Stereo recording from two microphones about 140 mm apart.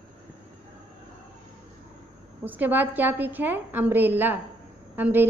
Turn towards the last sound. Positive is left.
turn(degrees=-15)  # may be behind; listen again after turning